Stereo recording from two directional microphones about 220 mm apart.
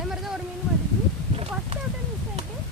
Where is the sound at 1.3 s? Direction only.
25° right (ahead or behind).